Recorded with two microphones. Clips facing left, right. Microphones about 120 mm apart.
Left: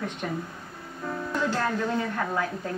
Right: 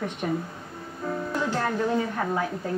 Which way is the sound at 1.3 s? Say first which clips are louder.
Left 1 dB; 15° right (ahead or behind).